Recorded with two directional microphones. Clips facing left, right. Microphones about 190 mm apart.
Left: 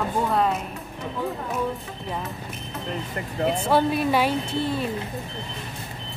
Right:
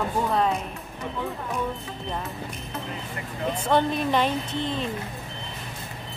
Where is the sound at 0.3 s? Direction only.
Centre (ahead or behind).